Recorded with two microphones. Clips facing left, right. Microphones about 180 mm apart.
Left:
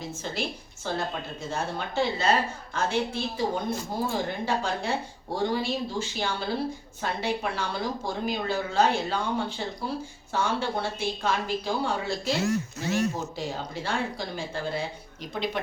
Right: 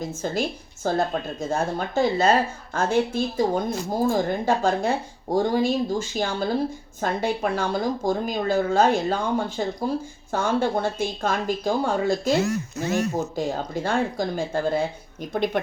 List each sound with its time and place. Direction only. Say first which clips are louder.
0.1 s a woman's voice: right 6 dB; 45° right (ahead or behind)